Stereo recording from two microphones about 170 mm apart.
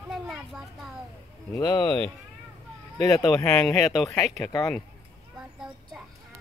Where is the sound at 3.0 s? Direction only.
20° left (ahead or behind).